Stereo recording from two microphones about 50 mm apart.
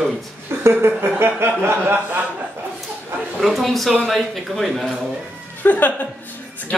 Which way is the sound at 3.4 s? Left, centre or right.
Centre.